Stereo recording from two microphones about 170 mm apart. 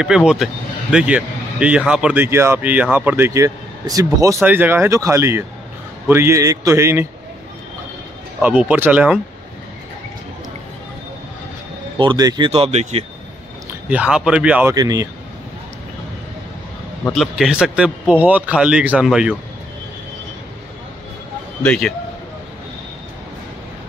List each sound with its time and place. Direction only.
0.0 s speech: 5° right (ahead or behind)
8.4 s speech: 10° right (ahead or behind)
12.0 s speech: 25° right (ahead or behind)
13.8 s speech: 5° right (ahead or behind)
14.8 s speech: 20° right (ahead or behind)
17.1 s speech: 5° right (ahead or behind)
21.6 s speech: 5° left (ahead or behind)